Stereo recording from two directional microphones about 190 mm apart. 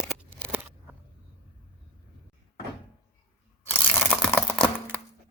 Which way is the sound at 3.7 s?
10° left (ahead or behind).